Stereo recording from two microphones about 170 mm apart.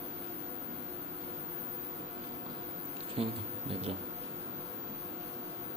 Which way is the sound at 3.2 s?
35° right (ahead or behind).